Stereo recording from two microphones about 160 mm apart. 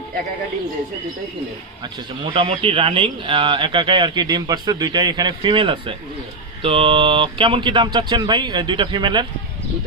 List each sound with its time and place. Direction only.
2.2 s speech: 35° right (ahead or behind)